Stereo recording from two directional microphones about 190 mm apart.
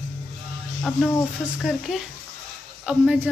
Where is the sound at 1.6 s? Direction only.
Centre (ahead or behind).